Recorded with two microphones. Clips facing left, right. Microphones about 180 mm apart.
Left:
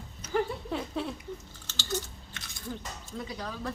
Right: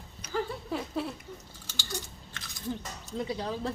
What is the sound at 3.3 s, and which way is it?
Speech, 30° right (ahead or behind).